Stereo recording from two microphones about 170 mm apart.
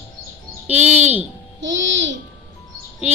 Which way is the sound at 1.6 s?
90° right.